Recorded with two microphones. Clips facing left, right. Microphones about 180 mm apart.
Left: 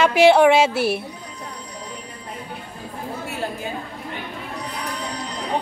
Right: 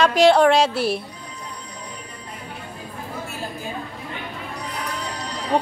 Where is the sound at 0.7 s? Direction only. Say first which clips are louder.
Left 1 dB; 60° left (ahead or behind).